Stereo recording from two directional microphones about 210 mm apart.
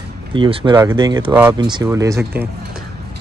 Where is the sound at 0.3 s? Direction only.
25° right (ahead or behind).